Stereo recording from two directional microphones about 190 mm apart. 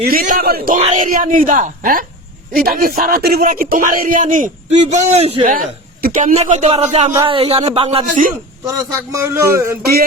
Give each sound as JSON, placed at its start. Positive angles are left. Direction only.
{"t": 0.1, "sound": "speech", "side_deg": -50}
{"t": 6.0, "sound": "a sound", "side_deg": -45}
{"t": 6.3, "sound": "a man's voice", "side_deg": -35}
{"t": 8.6, "sound": "a man's voice", "side_deg": -15}